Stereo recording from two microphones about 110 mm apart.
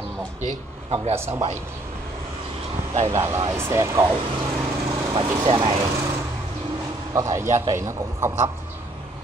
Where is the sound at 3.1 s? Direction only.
30° right (ahead or behind).